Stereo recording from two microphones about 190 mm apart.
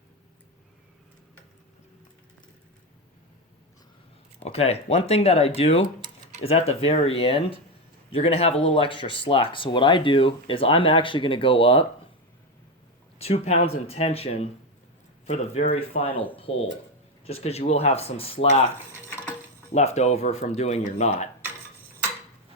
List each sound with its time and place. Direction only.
4.4 s speech: 30° left (ahead or behind)
13.1 s speech: 30° left (ahead or behind)
16.1 s speech: 10° left (ahead or behind)
16.4 s speech: 30° left (ahead or behind)
19.7 s speech: 35° left (ahead or behind)